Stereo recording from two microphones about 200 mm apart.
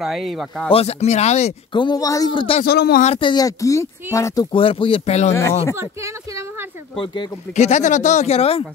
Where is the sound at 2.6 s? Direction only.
50° left (ahead or behind).